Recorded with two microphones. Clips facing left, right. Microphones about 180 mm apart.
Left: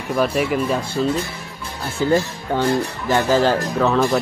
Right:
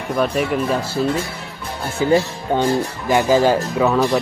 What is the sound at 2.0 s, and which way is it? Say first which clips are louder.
Speech: right 2 dB; 15° right (ahead or behind).